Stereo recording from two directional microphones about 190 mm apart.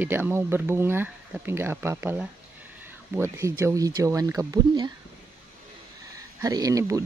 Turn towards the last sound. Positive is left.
turn(degrees=-15)  # may be behind; listen again after turning